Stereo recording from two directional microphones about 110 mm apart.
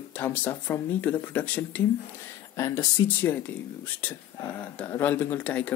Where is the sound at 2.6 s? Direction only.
30° left (ahead or behind).